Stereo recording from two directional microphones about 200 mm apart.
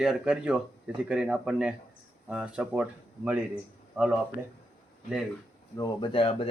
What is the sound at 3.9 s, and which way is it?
Speech, 5° right (ahead or behind).